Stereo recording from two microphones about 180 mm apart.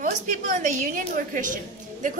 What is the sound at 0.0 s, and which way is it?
Speech, 45° right (ahead or behind).